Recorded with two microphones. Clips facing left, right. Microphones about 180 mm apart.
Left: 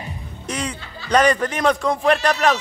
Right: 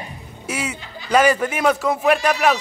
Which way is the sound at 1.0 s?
5° right (ahead or behind).